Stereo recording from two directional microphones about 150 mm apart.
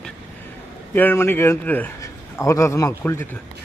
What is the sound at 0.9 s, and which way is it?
A man's voice, 15° left (ahead or behind).